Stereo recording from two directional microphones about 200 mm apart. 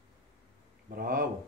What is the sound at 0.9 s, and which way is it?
Speech, 45° right (ahead or behind).